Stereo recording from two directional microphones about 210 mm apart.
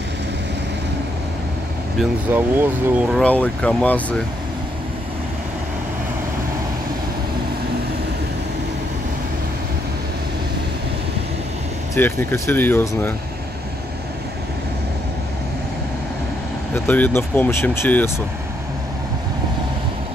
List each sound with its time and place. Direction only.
2.0 s speech: 5° right (ahead or behind)
3.2 s speech: 5° left (ahead or behind)
11.9 s speech: 10° left (ahead or behind)
16.7 s speech: 10° left (ahead or behind)